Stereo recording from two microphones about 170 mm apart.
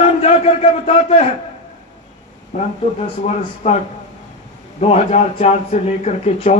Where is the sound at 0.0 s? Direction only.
35° left (ahead or behind).